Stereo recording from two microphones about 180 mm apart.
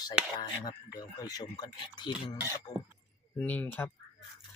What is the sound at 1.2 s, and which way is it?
Speech, 20° left (ahead or behind).